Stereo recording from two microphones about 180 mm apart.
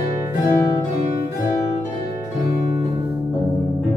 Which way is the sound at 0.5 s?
15° left (ahead or behind).